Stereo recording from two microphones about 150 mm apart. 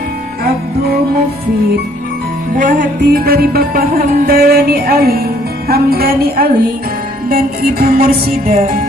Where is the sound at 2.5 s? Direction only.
65° right (ahead or behind).